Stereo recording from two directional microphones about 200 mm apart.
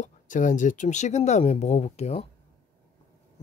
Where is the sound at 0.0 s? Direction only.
40° left (ahead or behind).